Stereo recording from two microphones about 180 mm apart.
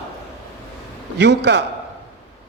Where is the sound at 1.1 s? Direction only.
70° right (ahead or behind).